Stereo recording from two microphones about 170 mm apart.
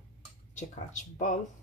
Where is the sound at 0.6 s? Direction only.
50° left (ahead or behind).